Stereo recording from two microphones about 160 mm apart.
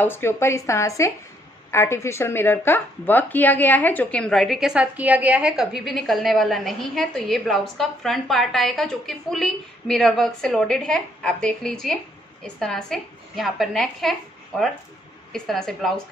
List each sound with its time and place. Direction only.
0.0 s speech: 15° left (ahead or behind)
15.3 s speech: 5° left (ahead or behind)